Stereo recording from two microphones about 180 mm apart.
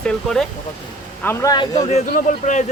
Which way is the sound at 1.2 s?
15° left (ahead or behind).